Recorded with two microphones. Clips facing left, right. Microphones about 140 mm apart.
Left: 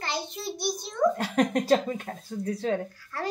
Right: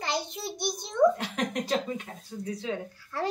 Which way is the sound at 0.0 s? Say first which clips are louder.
Right 1 dB; 15° right (ahead or behind).